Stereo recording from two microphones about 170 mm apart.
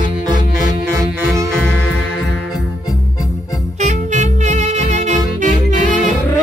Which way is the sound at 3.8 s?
45° right (ahead or behind).